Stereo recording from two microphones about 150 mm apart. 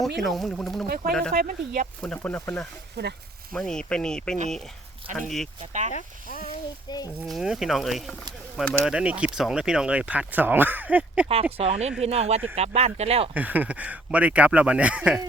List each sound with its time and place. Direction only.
0.0 s speech: centre (ahead or behind)
1.3 s speech: 85° right
2.0 s speech: 10° left (ahead or behind)
2.9 s speech: 90° right
3.5 s speech: 5° left (ahead or behind)
5.9 s speech: 60° left (ahead or behind)
7.3 s speech: centre (ahead or behind)
11.5 s speech: 45° right (ahead or behind)
13.3 s speech: 10° right (ahead or behind)